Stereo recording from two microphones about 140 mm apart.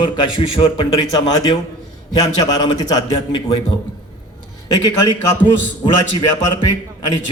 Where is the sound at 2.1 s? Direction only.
30° left (ahead or behind).